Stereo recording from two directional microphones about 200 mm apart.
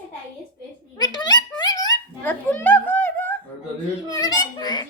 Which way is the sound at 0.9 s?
20° left (ahead or behind).